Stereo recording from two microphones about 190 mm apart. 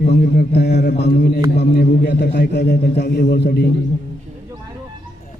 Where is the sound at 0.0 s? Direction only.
50° left (ahead or behind).